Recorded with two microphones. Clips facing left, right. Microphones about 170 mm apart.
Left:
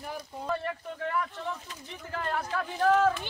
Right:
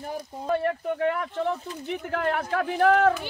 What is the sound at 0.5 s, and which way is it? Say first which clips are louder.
Speech: right 8 dB; 60° right (ahead or behind).